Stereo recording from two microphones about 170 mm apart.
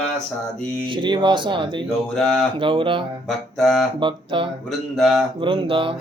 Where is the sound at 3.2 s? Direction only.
Centre (ahead or behind).